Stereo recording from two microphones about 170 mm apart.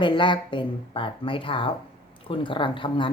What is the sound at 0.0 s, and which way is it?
Speech, 30° left (ahead or behind).